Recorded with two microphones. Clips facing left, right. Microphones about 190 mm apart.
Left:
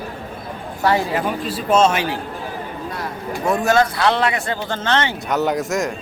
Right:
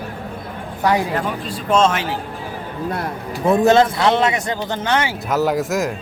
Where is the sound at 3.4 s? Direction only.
20° right (ahead or behind); by 5.9 s centre (ahead or behind).